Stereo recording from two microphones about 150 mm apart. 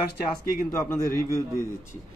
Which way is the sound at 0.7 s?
20° left (ahead or behind).